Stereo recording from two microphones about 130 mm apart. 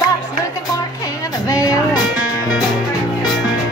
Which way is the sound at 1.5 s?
30° left (ahead or behind).